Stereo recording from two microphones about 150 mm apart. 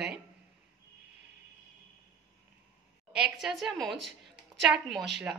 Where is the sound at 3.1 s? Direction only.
5° right (ahead or behind).